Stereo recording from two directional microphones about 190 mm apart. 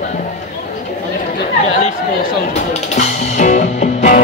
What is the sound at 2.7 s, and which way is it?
Music, 35° left (ahead or behind).